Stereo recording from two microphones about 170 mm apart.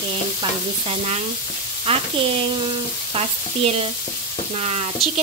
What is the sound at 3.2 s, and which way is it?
Frying, 35° right (ahead or behind).